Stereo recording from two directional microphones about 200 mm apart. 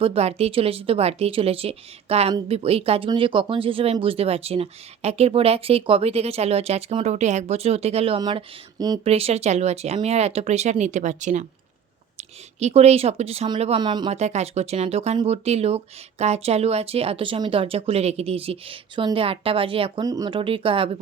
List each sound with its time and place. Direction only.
0.0 s speech: 30° right (ahead or behind)
14.2 s speech: 35° right (ahead or behind)